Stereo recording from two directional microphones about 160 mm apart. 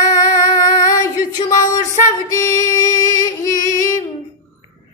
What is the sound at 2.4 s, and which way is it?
Music, 20° left (ahead or behind).